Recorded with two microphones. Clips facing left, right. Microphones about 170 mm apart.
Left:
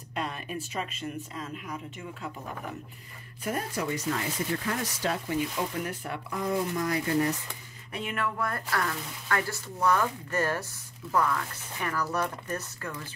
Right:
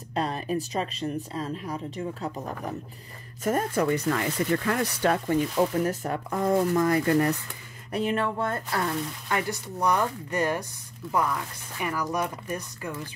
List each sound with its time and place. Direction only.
0.1 s speech: 35° right (ahead or behind)
3.8 s speech: 65° right (ahead or behind)
5.8 s speech: 40° right (ahead or behind); by 7.3 s 60° right (ahead or behind)
7.9 s speech: 35° right (ahead or behind); by 13.0 s 15° right (ahead or behind)